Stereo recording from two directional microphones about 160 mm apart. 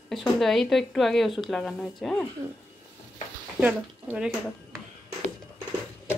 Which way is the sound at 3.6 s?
10° right (ahead or behind).